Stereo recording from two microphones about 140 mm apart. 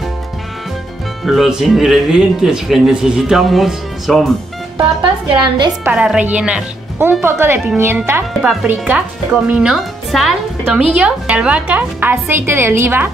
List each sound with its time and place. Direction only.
1.2 s speech: centre (ahead or behind)
4.7 s a woman's voice: 35° right (ahead or behind)
5.9 s speech: 10° right (ahead or behind)
8.3 s speech: centre (ahead or behind)
8.6 s speech: 15° right (ahead or behind)